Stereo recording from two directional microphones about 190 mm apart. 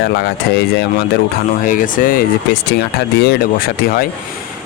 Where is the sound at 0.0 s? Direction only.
60° left (ahead or behind).